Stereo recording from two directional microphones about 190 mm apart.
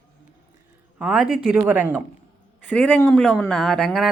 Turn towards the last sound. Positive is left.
turn(degrees=5)  # may be behind; listen again after turning